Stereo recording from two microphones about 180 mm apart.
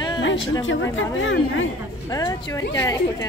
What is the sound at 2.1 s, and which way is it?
Speech, 20° left (ahead or behind).